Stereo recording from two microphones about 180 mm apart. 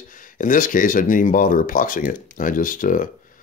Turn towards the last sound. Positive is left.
turn(degrees=50)  # may be behind; listen again after turning